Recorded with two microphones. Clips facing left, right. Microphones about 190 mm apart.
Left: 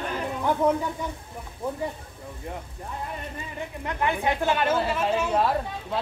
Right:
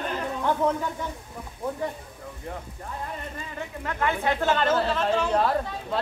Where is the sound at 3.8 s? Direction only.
15° left (ahead or behind).